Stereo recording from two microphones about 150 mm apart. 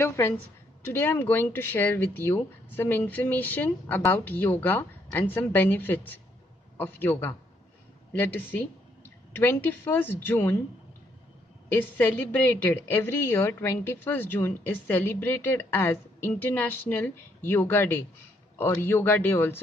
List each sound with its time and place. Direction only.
0.0 s a woman's voice: 15° left (ahead or behind)
11.7 s a woman's voice: 15° left (ahead or behind)